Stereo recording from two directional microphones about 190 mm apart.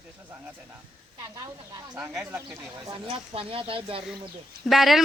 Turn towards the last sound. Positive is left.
turn(degrees=0)  # may be behind; listen again after turning